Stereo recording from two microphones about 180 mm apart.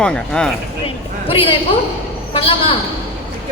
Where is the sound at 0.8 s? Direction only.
30° left (ahead or behind).